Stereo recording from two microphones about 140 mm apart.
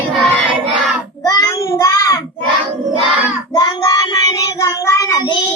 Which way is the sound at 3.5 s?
25° left (ahead or behind).